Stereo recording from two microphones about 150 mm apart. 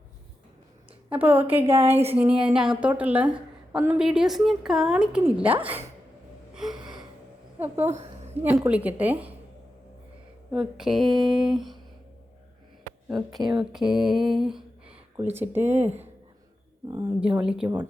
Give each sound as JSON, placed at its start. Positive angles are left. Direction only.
{"t": 1.1, "sound": "a woman's voice", "side_deg": -10}
{"t": 1.5, "sound": "a woman's voice", "side_deg": -40}
{"t": 2.4, "sound": "a sound", "side_deg": -5}
{"t": 3.0, "sound": "a woman's voice", "side_deg": -10}
{"t": 6.5, "sound": "gasp", "side_deg": -5}
{"t": 6.7, "sound": "gasp", "side_deg": -30}
{"t": 7.6, "sound": "a woman's voice", "side_deg": -15}
{"t": 10.5, "sound": "a sound", "side_deg": -5}
{"t": 13.1, "sound": "a sound", "side_deg": 0}
{"t": 15.1, "sound": "a woman's voice", "side_deg": -15}
{"t": 17.2, "sound": "a woman's voice", "side_deg": -10}